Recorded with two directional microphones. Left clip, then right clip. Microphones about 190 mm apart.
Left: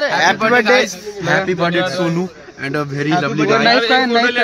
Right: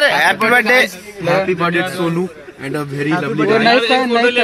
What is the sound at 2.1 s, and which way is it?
Speech, 10° left (ahead or behind).